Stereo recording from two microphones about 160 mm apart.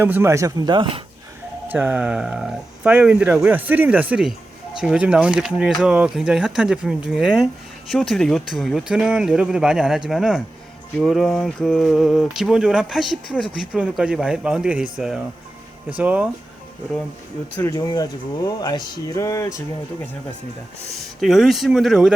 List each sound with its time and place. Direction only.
0.0 s speech: 15° right (ahead or behind); by 1.0 s 30° right (ahead or behind)
1.6 s speech: 10° right (ahead or behind)
5.8 s a sound: 5° right (ahead or behind)
15.9 s speech: 10° right (ahead or behind)
17.6 s speech: 20° left (ahead or behind)
21.2 s a sound: centre (ahead or behind)